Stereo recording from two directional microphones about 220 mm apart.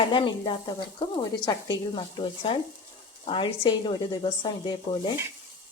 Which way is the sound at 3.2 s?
25° left (ahead or behind).